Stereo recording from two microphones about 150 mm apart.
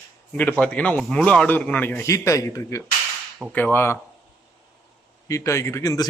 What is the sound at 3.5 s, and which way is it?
Speech, 10° left (ahead or behind).